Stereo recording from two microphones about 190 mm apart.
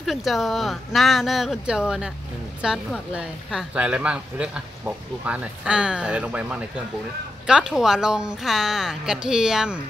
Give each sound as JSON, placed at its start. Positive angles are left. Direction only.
{"t": 0.0, "sound": "a woman's voice", "side_deg": 0}